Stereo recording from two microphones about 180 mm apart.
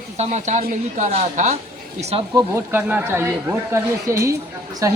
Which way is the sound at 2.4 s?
15° right (ahead or behind).